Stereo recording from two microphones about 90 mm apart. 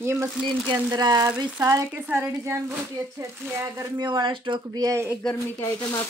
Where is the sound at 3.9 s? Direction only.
50° right (ahead or behind).